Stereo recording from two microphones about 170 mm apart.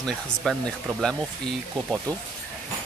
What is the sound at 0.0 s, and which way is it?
Speech, 5° left (ahead or behind).